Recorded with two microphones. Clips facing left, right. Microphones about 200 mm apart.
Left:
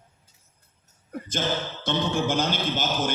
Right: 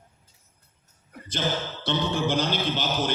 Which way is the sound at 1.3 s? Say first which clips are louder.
Even; 45° left (ahead or behind).